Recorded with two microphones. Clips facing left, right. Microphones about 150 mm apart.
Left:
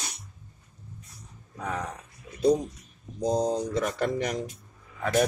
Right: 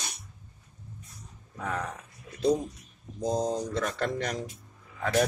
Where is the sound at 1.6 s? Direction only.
Centre (ahead or behind).